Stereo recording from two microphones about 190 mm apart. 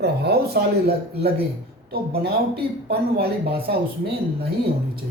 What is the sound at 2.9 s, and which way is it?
Speech, 55° right (ahead or behind).